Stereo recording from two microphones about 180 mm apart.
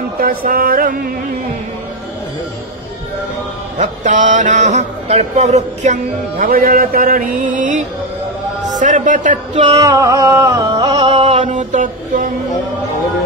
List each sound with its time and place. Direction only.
0.2 s speech: 55° right (ahead or behind)
3.7 s speech: 40° right (ahead or behind)
9.7 s music: 20° right (ahead or behind)
11.2 s mantra: 40° right (ahead or behind)